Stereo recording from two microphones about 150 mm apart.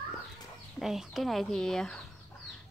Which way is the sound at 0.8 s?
Centre (ahead or behind).